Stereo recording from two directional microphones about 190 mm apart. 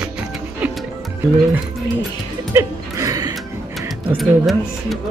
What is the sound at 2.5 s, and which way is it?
Music, 15° right (ahead or behind).